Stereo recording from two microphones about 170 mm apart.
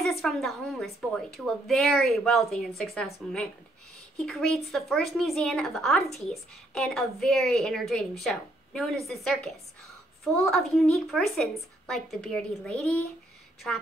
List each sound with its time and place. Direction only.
0.0 s a woman's voice: centre (ahead or behind)